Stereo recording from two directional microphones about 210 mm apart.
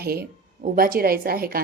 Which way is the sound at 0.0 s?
45° right (ahead or behind).